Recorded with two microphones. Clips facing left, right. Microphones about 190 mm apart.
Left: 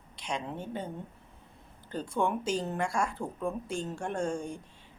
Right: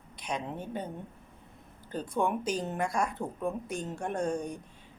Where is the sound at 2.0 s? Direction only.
15° right (ahead or behind).